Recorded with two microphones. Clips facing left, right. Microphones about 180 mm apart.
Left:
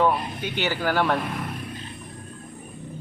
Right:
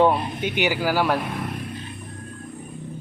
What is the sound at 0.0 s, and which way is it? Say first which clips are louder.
Speech: right 3 dB; 30° right (ahead or behind).